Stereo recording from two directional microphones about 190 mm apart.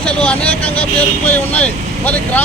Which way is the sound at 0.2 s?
5° left (ahead or behind).